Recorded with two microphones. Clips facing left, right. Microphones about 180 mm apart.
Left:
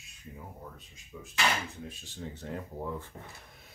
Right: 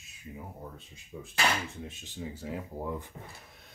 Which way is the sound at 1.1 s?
25° right (ahead or behind).